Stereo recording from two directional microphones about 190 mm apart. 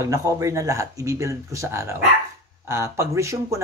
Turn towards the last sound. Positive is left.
turn(degrees=-15)  # may be behind; listen again after turning